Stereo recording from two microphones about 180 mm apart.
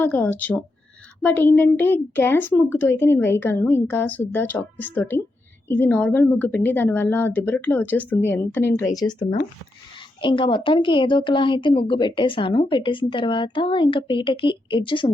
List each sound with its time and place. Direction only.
0.0 s a woman's voice: 10° left (ahead or behind); by 15.1 s 25° left (ahead or behind)